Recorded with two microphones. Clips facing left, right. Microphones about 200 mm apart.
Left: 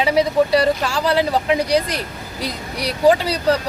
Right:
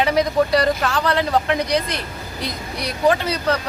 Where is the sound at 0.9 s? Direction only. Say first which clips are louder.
Left 2 dB; 30° left (ahead or behind).